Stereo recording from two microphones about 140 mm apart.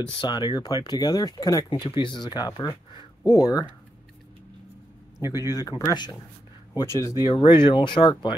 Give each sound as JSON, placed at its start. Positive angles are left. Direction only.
{"t": 0.2, "sound": "speech", "side_deg": 30}
{"t": 1.7, "sound": "speech", "side_deg": 35}
{"t": 5.5, "sound": "speech", "side_deg": 25}
{"t": 7.2, "sound": "speech", "side_deg": 35}